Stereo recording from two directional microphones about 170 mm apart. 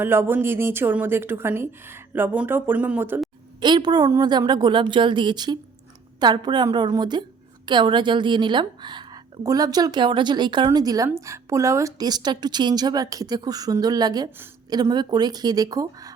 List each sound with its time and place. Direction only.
0.0 s a woman's voice: 15° right (ahead or behind)
3.6 s a woman's voice: 25° right (ahead or behind)